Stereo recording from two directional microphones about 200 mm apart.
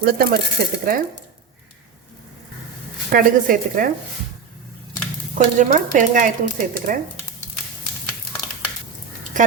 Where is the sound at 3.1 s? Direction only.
45° right (ahead or behind).